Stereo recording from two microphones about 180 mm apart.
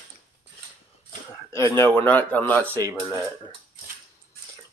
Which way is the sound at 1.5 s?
15° left (ahead or behind).